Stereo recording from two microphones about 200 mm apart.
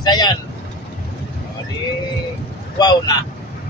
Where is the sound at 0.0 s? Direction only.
20° left (ahead or behind).